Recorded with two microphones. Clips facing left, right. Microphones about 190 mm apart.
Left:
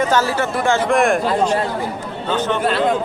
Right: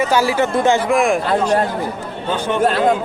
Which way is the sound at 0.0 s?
10° right (ahead or behind).